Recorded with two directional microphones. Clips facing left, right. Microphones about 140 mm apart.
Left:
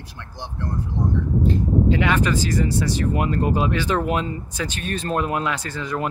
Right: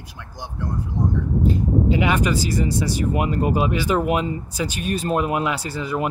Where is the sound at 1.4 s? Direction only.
10° right (ahead or behind).